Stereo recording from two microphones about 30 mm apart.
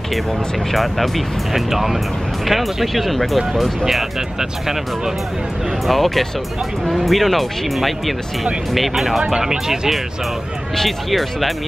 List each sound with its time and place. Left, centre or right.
0.7 s speech: centre
1.5 s speech: centre
4.4 s speech: centre
5.9 s speech: centre
9.3 s speech: centre
10.8 s speech: centre